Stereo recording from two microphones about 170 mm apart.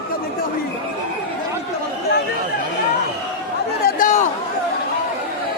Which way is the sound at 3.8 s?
50° left (ahead or behind).